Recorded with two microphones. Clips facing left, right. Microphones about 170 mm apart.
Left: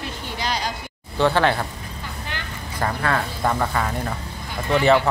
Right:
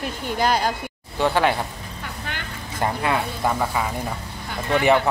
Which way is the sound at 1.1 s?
10° right (ahead or behind).